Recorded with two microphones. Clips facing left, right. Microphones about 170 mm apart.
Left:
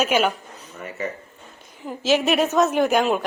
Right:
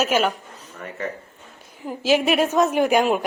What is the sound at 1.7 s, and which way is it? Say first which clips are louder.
A woman's voice: right 1 dB; 5° right (ahead or behind).